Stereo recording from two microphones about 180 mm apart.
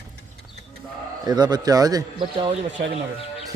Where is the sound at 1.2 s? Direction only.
25° right (ahead or behind).